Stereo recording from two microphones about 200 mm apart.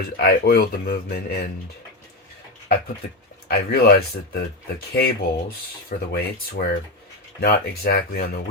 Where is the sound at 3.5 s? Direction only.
50° left (ahead or behind).